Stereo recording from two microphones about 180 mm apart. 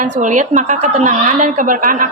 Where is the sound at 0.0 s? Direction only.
45° right (ahead or behind).